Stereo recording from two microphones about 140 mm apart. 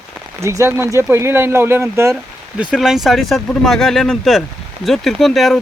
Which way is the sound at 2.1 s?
5° right (ahead or behind).